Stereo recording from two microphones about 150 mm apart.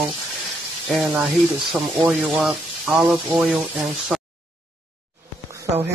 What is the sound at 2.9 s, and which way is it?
Speech, 15° right (ahead or behind).